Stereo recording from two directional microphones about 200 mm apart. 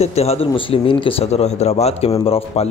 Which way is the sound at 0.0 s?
30° left (ahead or behind).